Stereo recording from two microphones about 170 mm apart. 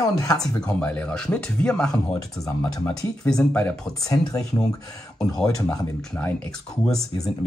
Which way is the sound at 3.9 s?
20° left (ahead or behind).